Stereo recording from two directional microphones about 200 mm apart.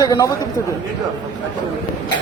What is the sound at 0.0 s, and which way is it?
Speech, 15° left (ahead or behind).